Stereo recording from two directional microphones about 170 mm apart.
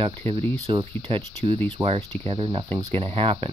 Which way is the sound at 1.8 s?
10° right (ahead or behind).